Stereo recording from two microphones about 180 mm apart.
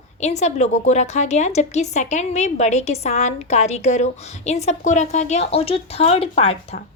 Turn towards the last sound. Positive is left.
turn(degrees=30)  # may be behind; listen again after turning